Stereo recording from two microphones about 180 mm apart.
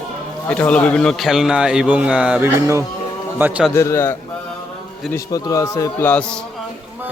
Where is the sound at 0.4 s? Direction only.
5° left (ahead or behind); by 3.7 s 10° right (ahead or behind).